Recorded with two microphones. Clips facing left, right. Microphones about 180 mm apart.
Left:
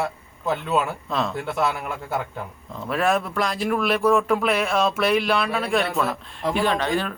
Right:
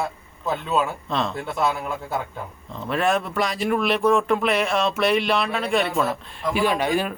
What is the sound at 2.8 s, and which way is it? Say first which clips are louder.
Speech: even; centre (ahead or behind).